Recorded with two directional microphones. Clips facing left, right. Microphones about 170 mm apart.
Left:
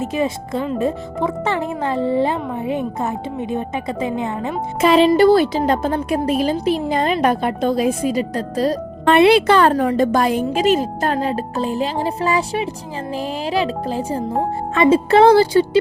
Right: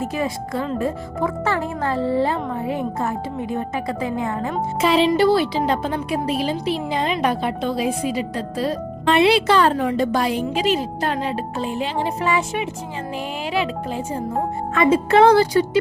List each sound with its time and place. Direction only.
0.0 s speech: 20° left (ahead or behind)
4.8 s a woman's voice: 50° left (ahead or behind)
9.1 s a woman's voice: 55° left (ahead or behind); by 15.8 s 30° left (ahead or behind)